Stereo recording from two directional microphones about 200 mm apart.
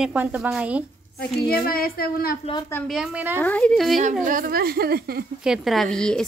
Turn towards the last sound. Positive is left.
turn(degrees=5)  # may be behind; listen again after turning